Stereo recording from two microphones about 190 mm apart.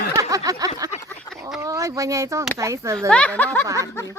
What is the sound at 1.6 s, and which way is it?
Speech, 15° right (ahead or behind).